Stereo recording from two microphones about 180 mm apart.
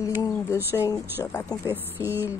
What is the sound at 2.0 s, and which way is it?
Speech, 10° right (ahead or behind).